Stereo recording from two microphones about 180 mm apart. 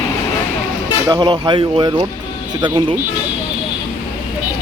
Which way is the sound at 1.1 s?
25° right (ahead or behind).